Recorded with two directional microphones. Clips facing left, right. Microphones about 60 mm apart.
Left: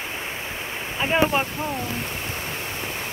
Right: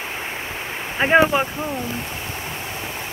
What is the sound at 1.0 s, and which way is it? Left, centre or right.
Speech, right.